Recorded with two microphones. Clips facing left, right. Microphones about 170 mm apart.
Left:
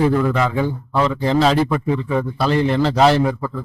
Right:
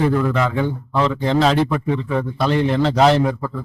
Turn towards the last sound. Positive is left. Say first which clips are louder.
# even
turn(degrees=5)  # may be behind; listen again after turning